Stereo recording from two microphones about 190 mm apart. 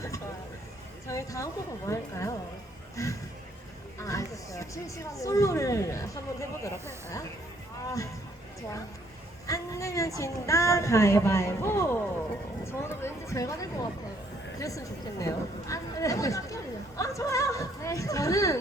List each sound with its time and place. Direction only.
1.0 s speech: 15° left (ahead or behind)
7.9 s speech: 15° left (ahead or behind)
9.5 s speech: 15° left (ahead or behind)